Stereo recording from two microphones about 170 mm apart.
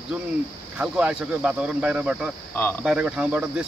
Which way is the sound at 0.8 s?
5° right (ahead or behind).